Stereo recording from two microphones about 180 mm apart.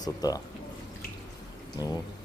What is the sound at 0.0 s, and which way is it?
Speech, 20° left (ahead or behind).